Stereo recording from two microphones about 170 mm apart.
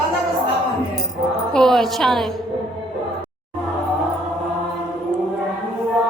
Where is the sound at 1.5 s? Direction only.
Centre (ahead or behind).